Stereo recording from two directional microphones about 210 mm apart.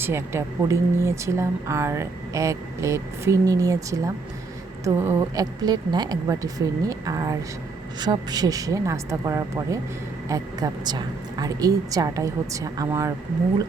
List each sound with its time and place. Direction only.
0.0 s speech: 10° right (ahead or behind)